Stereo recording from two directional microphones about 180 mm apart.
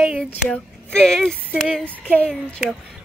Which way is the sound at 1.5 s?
Centre (ahead or behind).